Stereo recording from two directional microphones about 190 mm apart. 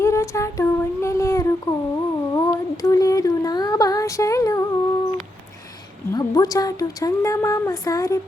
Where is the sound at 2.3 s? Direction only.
20° left (ahead or behind).